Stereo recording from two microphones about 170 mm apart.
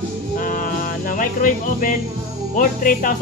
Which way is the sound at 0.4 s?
55° left (ahead or behind).